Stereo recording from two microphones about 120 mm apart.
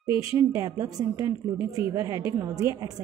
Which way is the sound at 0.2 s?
25° right (ahead or behind).